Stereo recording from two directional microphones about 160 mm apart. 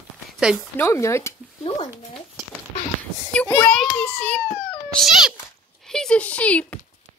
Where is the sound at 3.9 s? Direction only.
10° left (ahead or behind).